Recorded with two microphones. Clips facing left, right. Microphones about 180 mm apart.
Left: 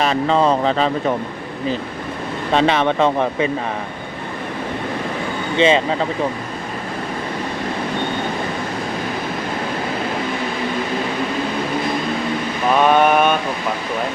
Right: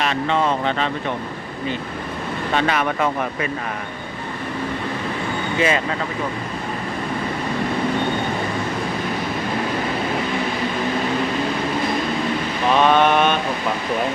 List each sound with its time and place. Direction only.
0.0 s speech: 35° left (ahead or behind)
2.5 s speech: 30° left (ahead or behind)
5.5 s speech: 25° left (ahead or behind)
12.8 s mantra: 10° left (ahead or behind)